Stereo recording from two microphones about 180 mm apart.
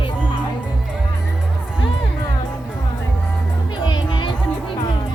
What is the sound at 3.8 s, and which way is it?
Music, 25° left (ahead or behind).